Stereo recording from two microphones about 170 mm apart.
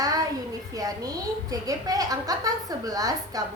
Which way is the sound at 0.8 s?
20° right (ahead or behind).